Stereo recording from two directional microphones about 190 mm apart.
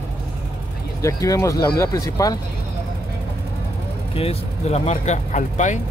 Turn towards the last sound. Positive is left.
turn(degrees=40)  # may be behind; listen again after turning